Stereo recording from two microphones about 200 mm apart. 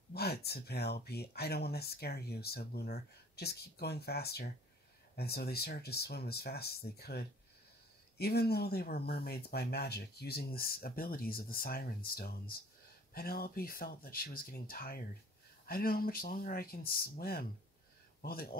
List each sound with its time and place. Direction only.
0.1 s speech: 55° left (ahead or behind)